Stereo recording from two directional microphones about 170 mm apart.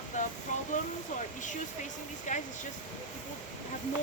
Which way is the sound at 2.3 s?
45° left (ahead or behind).